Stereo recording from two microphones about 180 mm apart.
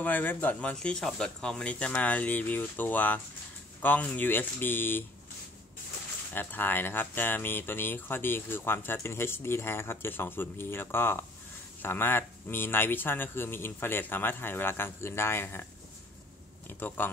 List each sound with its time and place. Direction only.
0.0 s speech: 10° left (ahead or behind)
6.3 s speech: 10° left (ahead or behind)
16.6 s speech: 10° left (ahead or behind)